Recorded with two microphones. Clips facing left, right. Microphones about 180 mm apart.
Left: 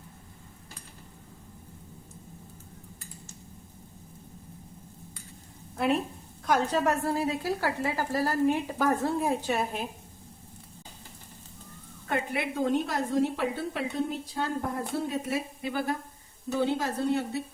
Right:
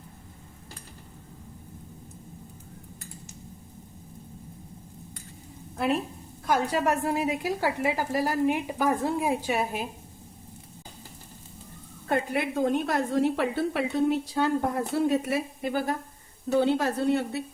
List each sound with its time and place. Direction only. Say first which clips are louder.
5.7 s a woman's voice: even; centre (ahead or behind)
12.0 s a woman's voice: right 3 dB; 40° right (ahead or behind); by 15.4 s 70° right (ahead or behind)
15.6 s speech: right 2 dB; 45° right (ahead or behind)
16.6 s a woman's voice: right 4 dB; 65° right (ahead or behind)